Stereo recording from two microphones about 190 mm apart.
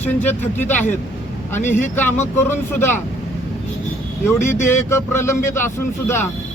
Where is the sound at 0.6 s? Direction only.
40° left (ahead or behind).